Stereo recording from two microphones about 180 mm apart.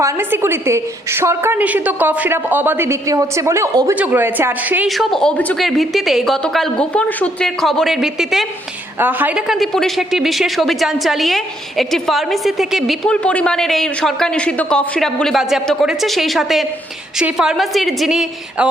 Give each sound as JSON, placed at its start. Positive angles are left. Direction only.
{"t": 0.0, "sound": "a woman's voice", "side_deg": -15}
{"t": 4.9, "sound": "speech", "side_deg": 0}